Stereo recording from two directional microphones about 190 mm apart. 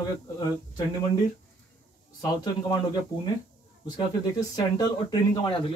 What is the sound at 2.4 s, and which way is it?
Speech, 20° left (ahead or behind).